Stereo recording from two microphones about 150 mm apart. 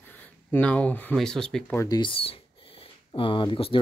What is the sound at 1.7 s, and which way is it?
Speech, 25° left (ahead or behind).